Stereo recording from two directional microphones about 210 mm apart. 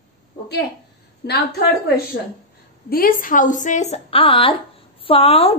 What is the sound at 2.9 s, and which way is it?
A woman's voice, 45° left (ahead or behind).